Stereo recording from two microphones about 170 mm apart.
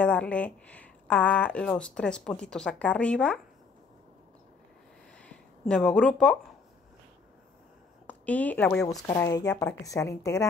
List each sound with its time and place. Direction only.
0.0 s speech: 5° left (ahead or behind)
5.2 s a sound: 5° left (ahead or behind)
8.1 s a woman's voice: 10° left (ahead or behind)